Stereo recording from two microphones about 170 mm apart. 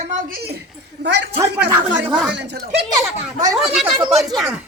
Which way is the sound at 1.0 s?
90° right.